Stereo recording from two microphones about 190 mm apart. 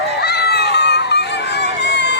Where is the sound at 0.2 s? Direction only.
60° left (ahead or behind).